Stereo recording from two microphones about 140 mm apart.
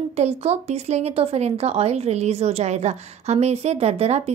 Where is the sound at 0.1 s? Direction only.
50° right (ahead or behind).